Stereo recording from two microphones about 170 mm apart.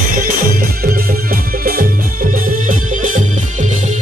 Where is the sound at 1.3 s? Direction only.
55° right (ahead or behind).